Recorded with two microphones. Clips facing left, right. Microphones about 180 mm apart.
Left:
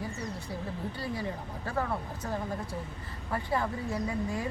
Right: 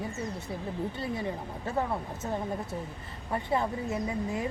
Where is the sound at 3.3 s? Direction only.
20° right (ahead or behind).